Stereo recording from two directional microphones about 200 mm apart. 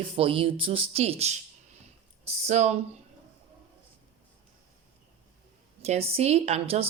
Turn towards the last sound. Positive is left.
turn(degrees=-30)  # may be behind; listen again after turning